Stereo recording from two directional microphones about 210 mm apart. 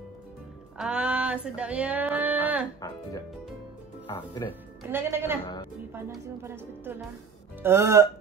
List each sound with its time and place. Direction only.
0.7 s a sound: 5° right (ahead or behind)
2.8 s speech: 15° left (ahead or behind)
4.1 s speech: 10° left (ahead or behind)
4.8 s a woman's voice: 10° right (ahead or behind)